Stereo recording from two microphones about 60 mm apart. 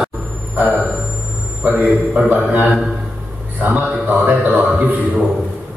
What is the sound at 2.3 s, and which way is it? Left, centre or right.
Speech, right.